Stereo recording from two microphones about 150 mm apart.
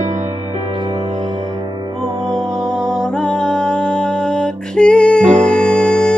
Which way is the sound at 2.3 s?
5° left (ahead or behind).